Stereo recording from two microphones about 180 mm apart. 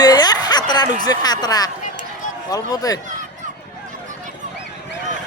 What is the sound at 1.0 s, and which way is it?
Speech, 20° left (ahead or behind).